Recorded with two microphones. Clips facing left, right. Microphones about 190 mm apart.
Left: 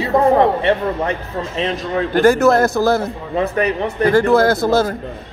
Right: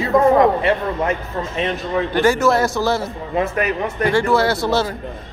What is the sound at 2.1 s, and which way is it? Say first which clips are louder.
Speech: left 4 dB; 55° left (ahead or behind).